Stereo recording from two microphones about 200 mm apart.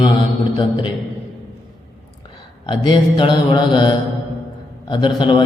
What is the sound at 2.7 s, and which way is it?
Mantra, 25° left (ahead or behind).